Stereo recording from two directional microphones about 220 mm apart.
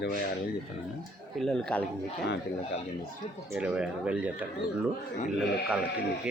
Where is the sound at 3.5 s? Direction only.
5° right (ahead or behind).